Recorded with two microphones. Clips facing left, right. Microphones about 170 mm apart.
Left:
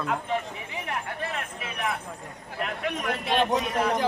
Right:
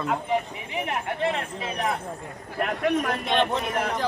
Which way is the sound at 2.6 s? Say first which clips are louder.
Right 6 dB; 50° right (ahead or behind).